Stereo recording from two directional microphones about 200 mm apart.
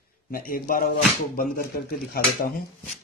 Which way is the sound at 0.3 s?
45° left (ahead or behind).